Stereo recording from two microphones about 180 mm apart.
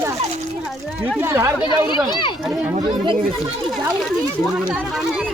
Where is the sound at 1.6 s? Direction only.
25° left (ahead or behind).